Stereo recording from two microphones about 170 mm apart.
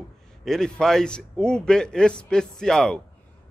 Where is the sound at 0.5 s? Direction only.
5° left (ahead or behind).